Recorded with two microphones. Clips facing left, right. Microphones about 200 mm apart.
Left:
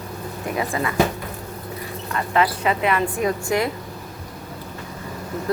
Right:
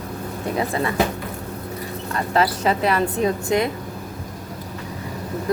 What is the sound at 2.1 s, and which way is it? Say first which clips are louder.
Speech: even; 35° right (ahead or behind).